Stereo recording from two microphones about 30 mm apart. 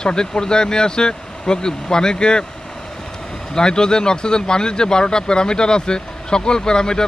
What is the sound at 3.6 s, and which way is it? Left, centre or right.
Speech, left.